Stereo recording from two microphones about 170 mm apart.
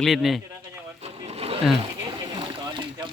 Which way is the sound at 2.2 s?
25° right (ahead or behind).